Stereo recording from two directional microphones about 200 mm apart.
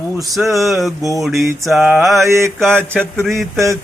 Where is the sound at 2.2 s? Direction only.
15° right (ahead or behind).